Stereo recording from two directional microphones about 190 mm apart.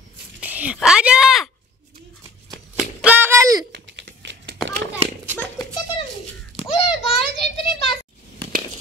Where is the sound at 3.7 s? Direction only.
65° right (ahead or behind).